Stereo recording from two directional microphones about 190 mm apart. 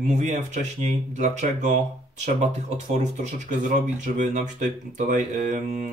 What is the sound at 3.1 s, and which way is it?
Speech, 40° right (ahead or behind).